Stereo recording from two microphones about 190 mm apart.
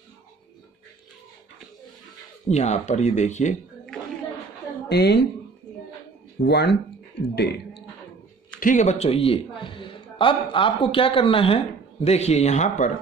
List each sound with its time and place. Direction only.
2.4 s speech: 35° left (ahead or behind)
3.9 s a sound: 5° left (ahead or behind)
4.8 s a woman's voice: 60° left (ahead or behind)
6.4 s a man's voice: 60° left (ahead or behind)
8.5 s a man's voice: 45° left (ahead or behind)